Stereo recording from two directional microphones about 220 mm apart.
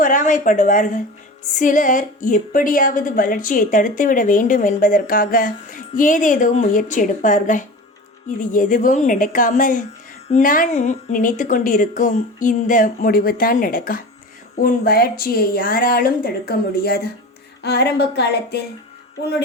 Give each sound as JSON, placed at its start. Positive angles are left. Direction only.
{"t": 0.0, "sound": "a woman's voice", "side_deg": 35}